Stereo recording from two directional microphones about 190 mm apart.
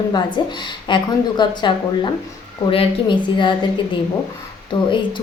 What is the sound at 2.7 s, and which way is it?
Speech, 25° left (ahead or behind).